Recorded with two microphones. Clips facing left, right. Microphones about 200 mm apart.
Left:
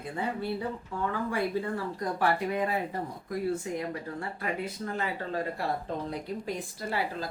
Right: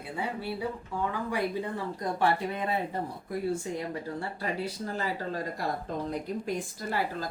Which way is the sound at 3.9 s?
30° right (ahead or behind).